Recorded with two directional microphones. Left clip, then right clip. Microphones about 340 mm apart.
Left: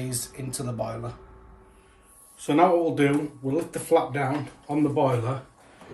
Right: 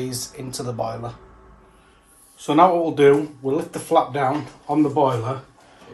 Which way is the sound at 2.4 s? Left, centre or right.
Centre.